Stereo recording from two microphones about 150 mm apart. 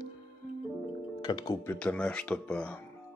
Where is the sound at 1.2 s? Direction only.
25° left (ahead or behind).